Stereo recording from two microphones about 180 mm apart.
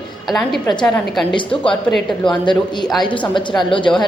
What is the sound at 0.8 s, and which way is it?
Speech, 5° left (ahead or behind).